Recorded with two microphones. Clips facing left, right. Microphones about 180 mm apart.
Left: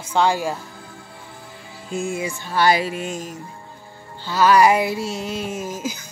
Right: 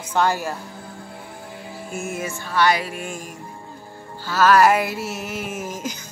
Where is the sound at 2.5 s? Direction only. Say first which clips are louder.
Left 2 dB; 30° left (ahead or behind).